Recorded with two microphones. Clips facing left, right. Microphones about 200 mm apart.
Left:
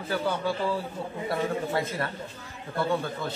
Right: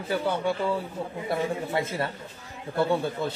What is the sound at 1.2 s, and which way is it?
Speech, 25° right (ahead or behind).